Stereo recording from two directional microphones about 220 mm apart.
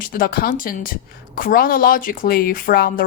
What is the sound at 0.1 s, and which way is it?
A woman's voice, 40° left (ahead or behind).